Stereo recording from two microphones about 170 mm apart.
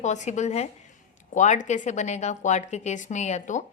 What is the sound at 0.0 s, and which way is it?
A woman's voice, 45° left (ahead or behind).